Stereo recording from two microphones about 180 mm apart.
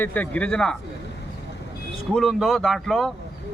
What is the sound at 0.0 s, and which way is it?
Speech, 10° left (ahead or behind).